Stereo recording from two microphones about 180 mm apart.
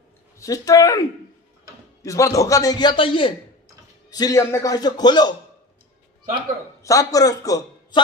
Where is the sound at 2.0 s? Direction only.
20° left (ahead or behind).